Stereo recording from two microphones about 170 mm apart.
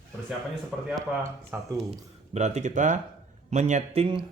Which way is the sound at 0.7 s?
Centre (ahead or behind).